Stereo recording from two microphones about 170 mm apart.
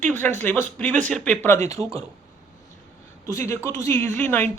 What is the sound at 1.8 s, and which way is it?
Speech, 35° right (ahead or behind).